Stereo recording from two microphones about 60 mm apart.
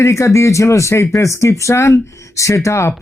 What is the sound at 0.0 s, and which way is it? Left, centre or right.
Speech, left.